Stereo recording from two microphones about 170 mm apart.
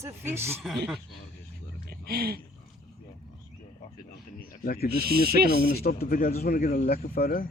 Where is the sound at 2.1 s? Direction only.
65° right (ahead or behind).